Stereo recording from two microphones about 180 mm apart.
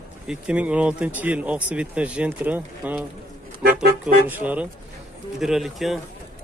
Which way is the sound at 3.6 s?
60° right (ahead or behind).